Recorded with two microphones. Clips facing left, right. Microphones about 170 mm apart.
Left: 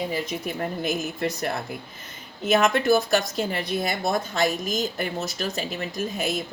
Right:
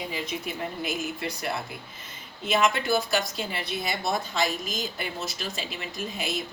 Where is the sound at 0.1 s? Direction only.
45° left (ahead or behind).